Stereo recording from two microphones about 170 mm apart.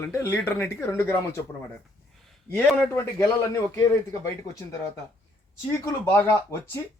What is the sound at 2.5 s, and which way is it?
A man's voice, 10° left (ahead or behind).